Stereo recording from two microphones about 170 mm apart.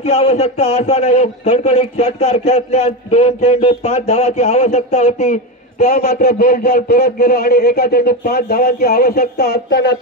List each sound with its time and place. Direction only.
0.0 s a man's voice: 40° left (ahead or behind)
6.2 s a man's voice: 65° left (ahead or behind); by 9.9 s 90° left